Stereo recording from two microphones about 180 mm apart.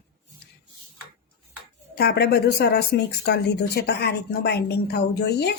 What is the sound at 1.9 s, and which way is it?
Speech, 60° left (ahead or behind).